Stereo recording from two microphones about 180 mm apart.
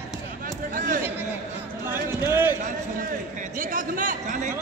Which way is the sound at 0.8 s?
50° right (ahead or behind).